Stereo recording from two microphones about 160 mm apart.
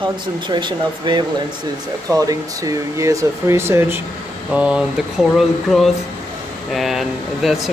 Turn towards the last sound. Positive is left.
turn(degrees=0)  # may be behind; listen again after turning